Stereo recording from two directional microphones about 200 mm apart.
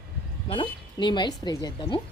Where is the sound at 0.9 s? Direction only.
20° left (ahead or behind).